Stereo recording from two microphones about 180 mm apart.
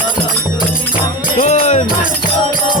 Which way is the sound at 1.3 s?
45° left (ahead or behind).